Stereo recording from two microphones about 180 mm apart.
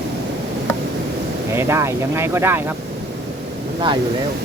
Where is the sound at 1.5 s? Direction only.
15° right (ahead or behind).